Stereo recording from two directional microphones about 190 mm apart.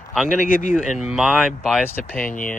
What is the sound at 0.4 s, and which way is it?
Speech, 45° left (ahead or behind).